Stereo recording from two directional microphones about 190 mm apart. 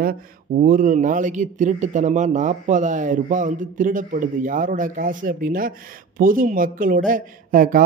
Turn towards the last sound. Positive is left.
turn(degrees=-45)  # may be behind; listen again after turning